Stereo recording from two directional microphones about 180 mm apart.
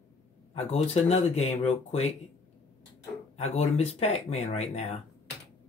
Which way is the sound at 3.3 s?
35° left (ahead or behind).